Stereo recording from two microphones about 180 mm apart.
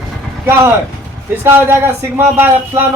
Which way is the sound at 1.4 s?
15° right (ahead or behind).